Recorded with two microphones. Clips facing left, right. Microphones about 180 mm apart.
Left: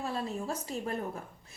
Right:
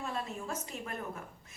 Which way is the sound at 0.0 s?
35° left (ahead or behind).